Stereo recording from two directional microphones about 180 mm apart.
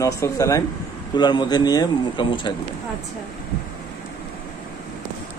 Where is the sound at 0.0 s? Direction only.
20° left (ahead or behind).